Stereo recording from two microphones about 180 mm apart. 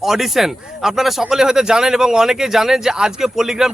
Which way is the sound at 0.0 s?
Centre (ahead or behind).